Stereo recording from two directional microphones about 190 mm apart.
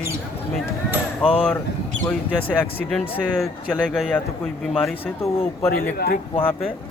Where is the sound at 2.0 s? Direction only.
5° left (ahead or behind).